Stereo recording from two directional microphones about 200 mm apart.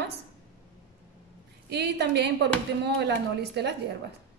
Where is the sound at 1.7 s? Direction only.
55° right (ahead or behind).